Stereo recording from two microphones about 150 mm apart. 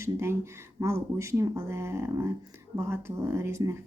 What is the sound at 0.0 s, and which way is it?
A woman's voice, 20° right (ahead or behind).